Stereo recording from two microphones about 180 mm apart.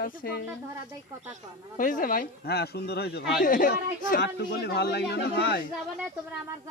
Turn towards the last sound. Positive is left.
turn(degrees=65)  # may be behind; listen again after turning